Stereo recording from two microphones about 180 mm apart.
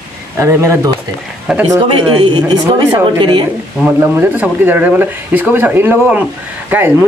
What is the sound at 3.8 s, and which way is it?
Speech, 10° right (ahead or behind).